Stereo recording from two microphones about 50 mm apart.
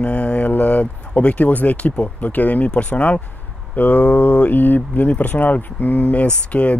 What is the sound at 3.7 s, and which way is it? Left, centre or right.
Speech, left.